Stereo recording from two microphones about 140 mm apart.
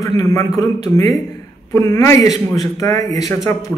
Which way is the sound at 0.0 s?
20° left (ahead or behind).